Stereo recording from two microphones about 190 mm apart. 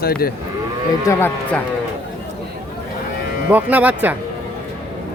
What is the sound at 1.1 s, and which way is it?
Speech, 10° left (ahead or behind).